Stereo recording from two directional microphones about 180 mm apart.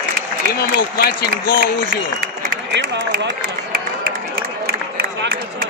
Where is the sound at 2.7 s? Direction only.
75° right (ahead or behind).